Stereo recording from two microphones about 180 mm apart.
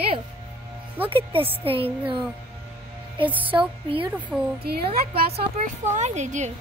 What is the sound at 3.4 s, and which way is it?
Music, 30° right (ahead or behind).